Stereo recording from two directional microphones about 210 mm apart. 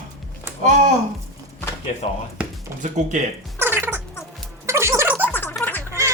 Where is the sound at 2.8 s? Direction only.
35° right (ahead or behind).